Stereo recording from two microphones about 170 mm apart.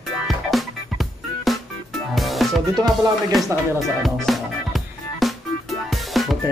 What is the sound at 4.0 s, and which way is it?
Music, centre (ahead or behind).